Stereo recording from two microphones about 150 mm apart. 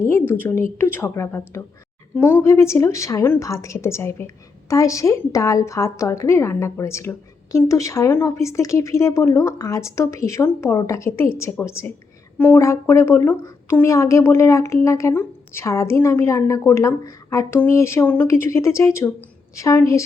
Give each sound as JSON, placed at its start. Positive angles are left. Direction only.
{"t": 0.0, "sound": "a woman's voice", "side_deg": 15}